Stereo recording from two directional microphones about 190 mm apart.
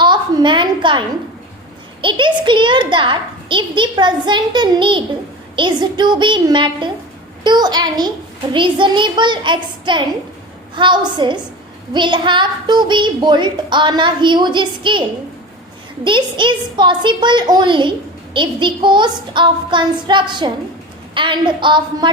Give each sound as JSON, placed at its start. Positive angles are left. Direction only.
{"t": 0.0, "sound": "a sound", "side_deg": -25}
{"t": 2.0, "sound": "a woman's voice", "side_deg": -25}
{"t": 16.0, "sound": "a woman's voice", "side_deg": -25}